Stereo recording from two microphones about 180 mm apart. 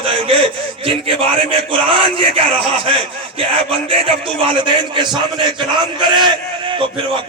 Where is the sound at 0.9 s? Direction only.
30° right (ahead or behind).